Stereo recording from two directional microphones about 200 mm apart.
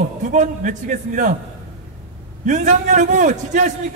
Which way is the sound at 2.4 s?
35° right (ahead or behind).